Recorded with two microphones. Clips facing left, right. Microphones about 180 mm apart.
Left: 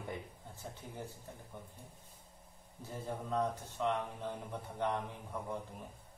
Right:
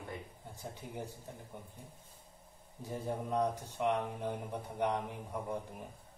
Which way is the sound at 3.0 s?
15° right (ahead or behind).